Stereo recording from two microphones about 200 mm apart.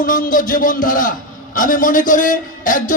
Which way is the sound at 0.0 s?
40° left (ahead or behind).